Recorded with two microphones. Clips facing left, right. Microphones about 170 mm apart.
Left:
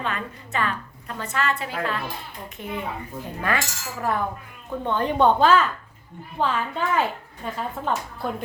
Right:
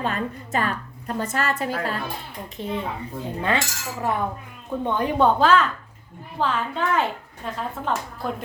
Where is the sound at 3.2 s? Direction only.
25° right (ahead or behind).